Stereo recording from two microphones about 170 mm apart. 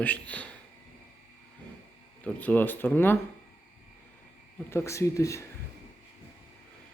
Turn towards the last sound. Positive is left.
turn(degrees=20)  # may be behind; listen again after turning